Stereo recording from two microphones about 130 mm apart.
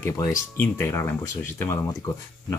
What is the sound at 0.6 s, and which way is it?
Speech, 20° left (ahead or behind).